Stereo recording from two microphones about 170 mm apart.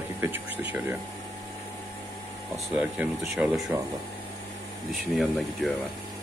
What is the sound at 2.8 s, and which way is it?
Speech, 5° right (ahead or behind).